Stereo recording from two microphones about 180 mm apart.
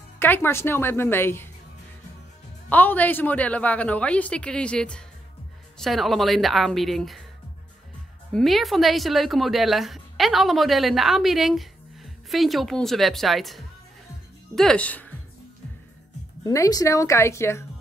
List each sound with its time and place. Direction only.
0.2 s a woman's voice: 10° left (ahead or behind)
2.7 s a woman's voice: 10° left (ahead or behind)
8.3 s a woman's voice: centre (ahead or behind)
16.4 s a woman's voice: 20° left (ahead or behind)